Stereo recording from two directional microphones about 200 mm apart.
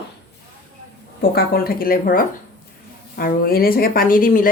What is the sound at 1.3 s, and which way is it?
Speech, 50° left (ahead or behind).